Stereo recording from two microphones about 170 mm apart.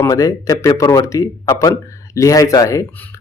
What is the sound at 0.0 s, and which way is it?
Speech, 20° left (ahead or behind).